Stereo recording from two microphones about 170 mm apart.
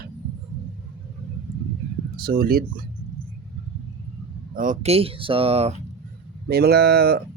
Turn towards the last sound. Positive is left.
turn(degrees=-70)  # may be behind; listen again after turning